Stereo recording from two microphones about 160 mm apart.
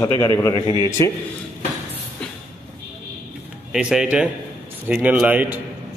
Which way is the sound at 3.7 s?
5° right (ahead or behind).